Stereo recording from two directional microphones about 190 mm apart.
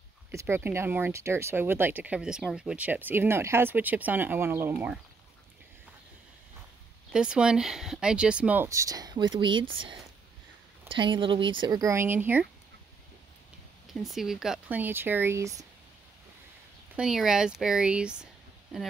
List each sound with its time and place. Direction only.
0.3 s speech: 15° right (ahead or behind)
7.1 s speech: 5° right (ahead or behind); by 9.7 s 25° right (ahead or behind)
10.9 s speech: 25° right (ahead or behind); by 12.4 s 10° right (ahead or behind)
13.9 s speech: centre (ahead or behind)
16.9 s speech: 5° right (ahead or behind)